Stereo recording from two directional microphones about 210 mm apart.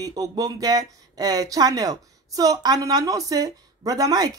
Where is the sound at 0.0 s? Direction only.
15° right (ahead or behind).